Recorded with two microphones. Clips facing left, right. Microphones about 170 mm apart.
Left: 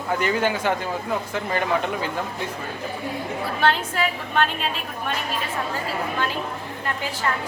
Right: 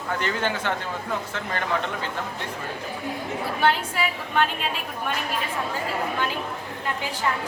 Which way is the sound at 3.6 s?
10° right (ahead or behind).